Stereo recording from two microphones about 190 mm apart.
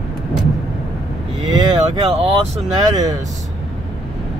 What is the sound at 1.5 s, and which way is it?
Vehicle, 20° right (ahead or behind).